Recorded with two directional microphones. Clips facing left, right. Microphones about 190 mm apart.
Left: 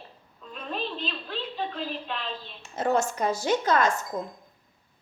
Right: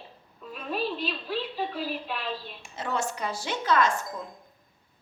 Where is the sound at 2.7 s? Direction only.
45° left (ahead or behind).